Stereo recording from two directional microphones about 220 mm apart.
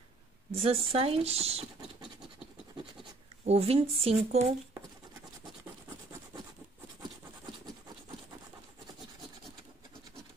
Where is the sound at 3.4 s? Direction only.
30° right (ahead or behind).